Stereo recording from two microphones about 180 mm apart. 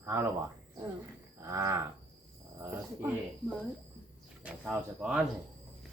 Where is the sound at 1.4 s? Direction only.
15° right (ahead or behind).